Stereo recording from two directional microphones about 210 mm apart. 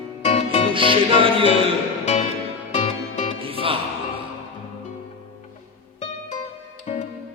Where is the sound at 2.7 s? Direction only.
30° left (ahead or behind).